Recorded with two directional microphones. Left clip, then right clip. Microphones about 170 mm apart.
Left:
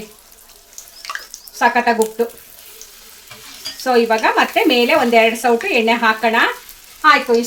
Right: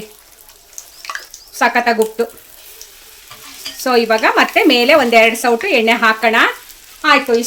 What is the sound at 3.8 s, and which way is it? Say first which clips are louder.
Speech: right 2 dB; 60° right (ahead or behind).